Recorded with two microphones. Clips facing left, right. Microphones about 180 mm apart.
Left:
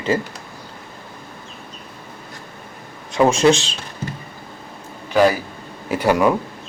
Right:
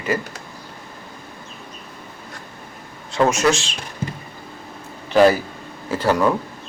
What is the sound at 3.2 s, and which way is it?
Speech, 30° left (ahead or behind).